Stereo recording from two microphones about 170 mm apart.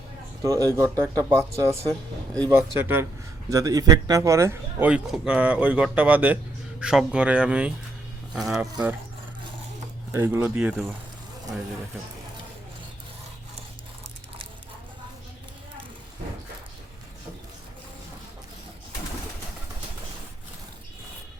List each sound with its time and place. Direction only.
0.4 s speech: 20° right (ahead or behind); by 8.6 s centre (ahead or behind)
10.1 s speech: 15° right (ahead or behind)